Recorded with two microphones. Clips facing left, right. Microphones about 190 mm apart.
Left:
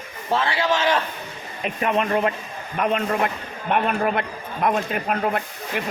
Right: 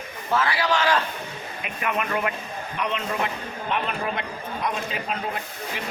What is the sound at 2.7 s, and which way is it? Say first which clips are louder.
A man's voice: left 6 dB; 50° left (ahead or behind).